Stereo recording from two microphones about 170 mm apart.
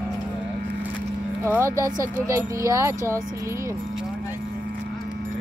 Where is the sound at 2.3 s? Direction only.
20° right (ahead or behind).